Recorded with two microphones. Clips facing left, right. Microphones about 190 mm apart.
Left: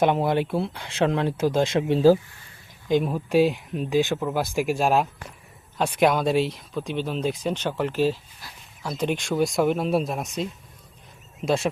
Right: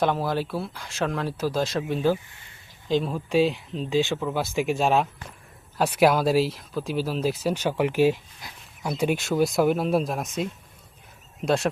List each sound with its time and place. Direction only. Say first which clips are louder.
0.0 s speech: left 3 dB; 20° left (ahead or behind)
2.9 s speech: left 2 dB; 15° left (ahead or behind)